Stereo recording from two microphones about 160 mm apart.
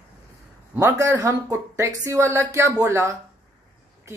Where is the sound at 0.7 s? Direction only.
20° right (ahead or behind).